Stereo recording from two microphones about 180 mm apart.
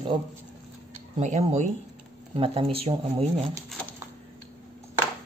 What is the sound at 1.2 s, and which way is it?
Speech, 40° right (ahead or behind).